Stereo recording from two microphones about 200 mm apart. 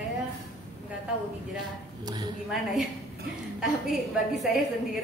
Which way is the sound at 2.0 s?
20° right (ahead or behind).